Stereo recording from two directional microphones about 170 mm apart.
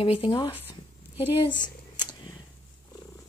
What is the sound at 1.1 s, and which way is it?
Speech, 10° right (ahead or behind).